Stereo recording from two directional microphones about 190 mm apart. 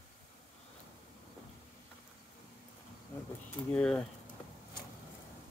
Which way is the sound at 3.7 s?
5° left (ahead or behind).